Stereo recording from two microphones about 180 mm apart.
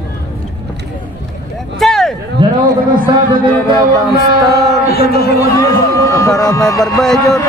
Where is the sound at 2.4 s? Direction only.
25° right (ahead or behind).